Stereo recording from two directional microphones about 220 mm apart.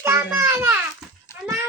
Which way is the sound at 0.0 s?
10° right (ahead or behind).